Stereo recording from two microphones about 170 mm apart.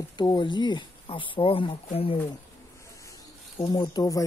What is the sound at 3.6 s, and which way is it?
Speech, 25° left (ahead or behind).